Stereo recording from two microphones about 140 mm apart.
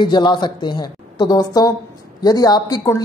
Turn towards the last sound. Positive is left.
turn(degrees=25)  # may be behind; listen again after turning